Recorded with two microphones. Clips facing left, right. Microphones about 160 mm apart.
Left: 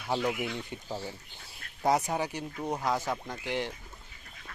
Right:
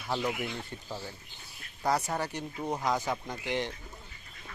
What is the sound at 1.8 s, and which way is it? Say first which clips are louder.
Speech: left 2 dB; 20° left (ahead or behind).